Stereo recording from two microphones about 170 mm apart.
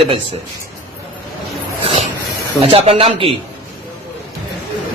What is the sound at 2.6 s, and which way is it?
Speech, 35° right (ahead or behind).